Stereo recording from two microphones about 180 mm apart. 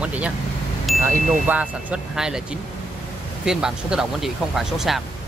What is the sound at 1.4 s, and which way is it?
Speech, 5° right (ahead or behind).